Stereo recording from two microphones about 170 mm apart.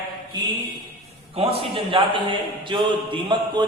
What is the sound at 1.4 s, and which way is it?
A man's voice, 35° right (ahead or behind).